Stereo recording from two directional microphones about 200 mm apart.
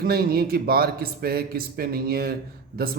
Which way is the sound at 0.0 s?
45° right (ahead or behind).